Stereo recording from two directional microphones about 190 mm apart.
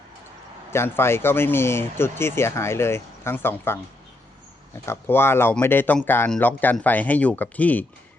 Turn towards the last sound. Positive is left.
turn(degrees=10)  # may be behind; listen again after turning